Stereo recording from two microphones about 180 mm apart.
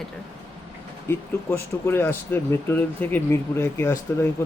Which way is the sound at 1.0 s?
10° left (ahead or behind).